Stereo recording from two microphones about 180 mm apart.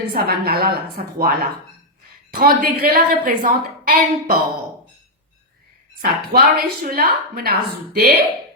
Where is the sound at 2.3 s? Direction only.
60° right (ahead or behind).